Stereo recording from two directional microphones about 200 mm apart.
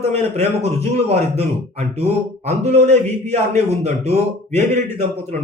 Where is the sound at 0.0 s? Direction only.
30° right (ahead or behind).